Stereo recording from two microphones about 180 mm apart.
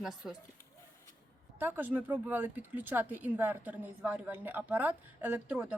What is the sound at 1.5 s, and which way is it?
Speech, 10° right (ahead or behind).